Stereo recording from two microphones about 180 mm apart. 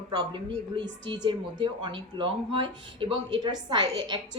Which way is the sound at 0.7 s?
25° right (ahead or behind).